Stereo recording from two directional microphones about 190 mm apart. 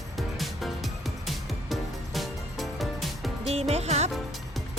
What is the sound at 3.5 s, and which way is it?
Music, 35° right (ahead or behind).